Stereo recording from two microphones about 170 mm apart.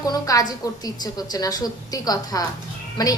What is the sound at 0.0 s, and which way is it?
A woman's voice, 20° left (ahead or behind).